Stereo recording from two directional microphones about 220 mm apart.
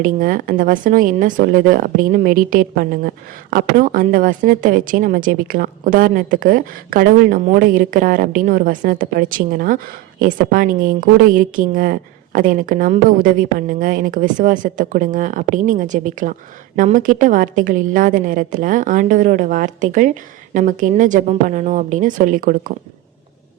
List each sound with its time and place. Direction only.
0.0 s speech: 40° right (ahead or behind)